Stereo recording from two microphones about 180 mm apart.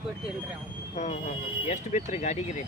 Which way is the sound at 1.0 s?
40° left (ahead or behind).